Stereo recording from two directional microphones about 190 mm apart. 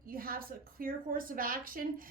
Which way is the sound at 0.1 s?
50° right (ahead or behind).